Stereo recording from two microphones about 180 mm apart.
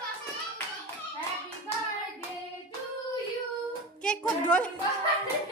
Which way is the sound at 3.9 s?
5° left (ahead or behind).